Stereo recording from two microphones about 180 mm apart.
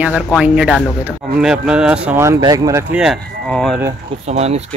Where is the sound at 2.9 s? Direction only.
Centre (ahead or behind).